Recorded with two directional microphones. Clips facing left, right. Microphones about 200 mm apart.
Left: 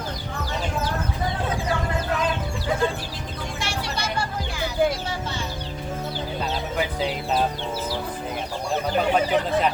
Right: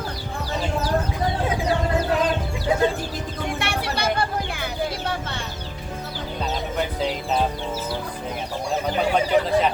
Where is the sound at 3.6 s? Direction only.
60° right (ahead or behind).